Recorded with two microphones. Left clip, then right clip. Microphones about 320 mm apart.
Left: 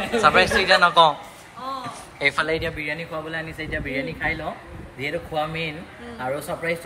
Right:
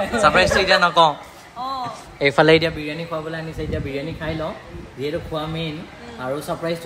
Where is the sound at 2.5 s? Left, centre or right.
Right.